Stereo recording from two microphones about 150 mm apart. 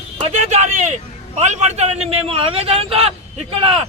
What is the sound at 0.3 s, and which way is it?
A man's voice, 50° right (ahead or behind).